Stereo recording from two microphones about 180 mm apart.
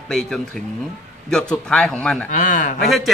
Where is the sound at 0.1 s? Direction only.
Centre (ahead or behind).